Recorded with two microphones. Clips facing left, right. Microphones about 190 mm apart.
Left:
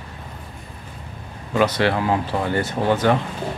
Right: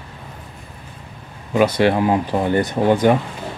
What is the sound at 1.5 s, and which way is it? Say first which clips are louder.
Speech: right 3 dB; 15° right (ahead or behind).